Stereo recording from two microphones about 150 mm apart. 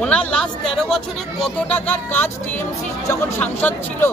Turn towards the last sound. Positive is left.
turn(degrees=10)  # may be behind; listen again after turning